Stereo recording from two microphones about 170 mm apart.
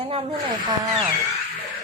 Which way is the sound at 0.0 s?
35° right (ahead or behind).